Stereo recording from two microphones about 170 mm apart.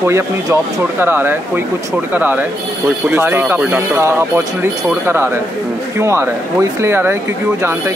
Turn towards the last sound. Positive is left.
turn(degrees=-15)  # may be behind; listen again after turning